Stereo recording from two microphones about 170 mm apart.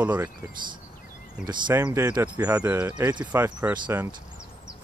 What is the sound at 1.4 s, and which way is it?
Speech, 20° right (ahead or behind).